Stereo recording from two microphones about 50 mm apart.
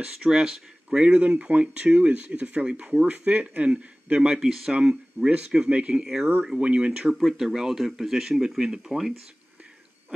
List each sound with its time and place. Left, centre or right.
0.0 s speech: centre
0.8 s speech: centre
4.4 s speech: centre
4.7 s speech: right
7.2 s speech: centre